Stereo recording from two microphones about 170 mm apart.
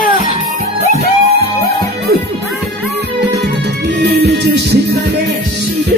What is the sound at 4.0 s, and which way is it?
Music, 80° right.